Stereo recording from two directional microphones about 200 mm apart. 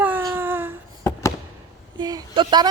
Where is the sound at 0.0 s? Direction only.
10° right (ahead or behind).